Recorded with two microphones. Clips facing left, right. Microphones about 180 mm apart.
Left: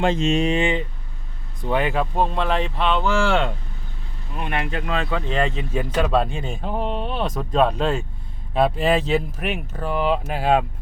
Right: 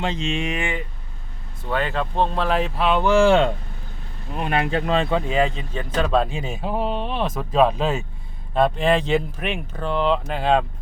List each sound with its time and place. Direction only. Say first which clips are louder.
0.0 s speech: left 6 dB; 45° left (ahead or behind)
0.5 s speech: left 6 dB; 20° left (ahead or behind); by 3.4 s 20° right (ahead or behind)
4.4 s speech: right 4 dB; 35° right (ahead or behind)
5.2 s speech: right 2 dB; 5° right (ahead or behind)